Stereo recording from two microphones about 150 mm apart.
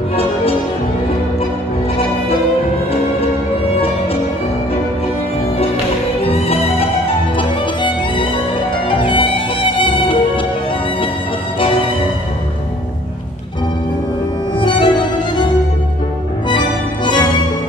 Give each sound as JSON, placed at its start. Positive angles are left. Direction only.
{"t": 6.2, "sound": "music", "side_deg": 40}
{"t": 14.6, "sound": "music", "side_deg": 30}
{"t": 16.4, "sound": "music", "side_deg": 30}